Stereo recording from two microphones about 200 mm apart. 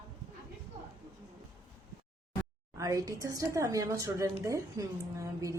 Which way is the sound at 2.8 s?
15° right (ahead or behind).